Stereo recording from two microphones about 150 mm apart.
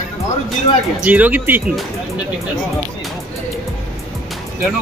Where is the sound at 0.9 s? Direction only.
10° right (ahead or behind).